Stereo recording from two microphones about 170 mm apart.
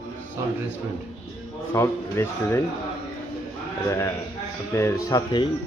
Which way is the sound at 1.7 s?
15° left (ahead or behind).